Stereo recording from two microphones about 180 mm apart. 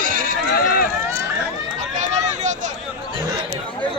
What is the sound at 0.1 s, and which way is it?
Run, 50° right (ahead or behind).